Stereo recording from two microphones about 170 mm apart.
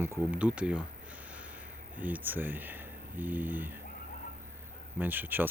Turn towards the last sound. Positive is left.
turn(degrees=-10)  # may be behind; listen again after turning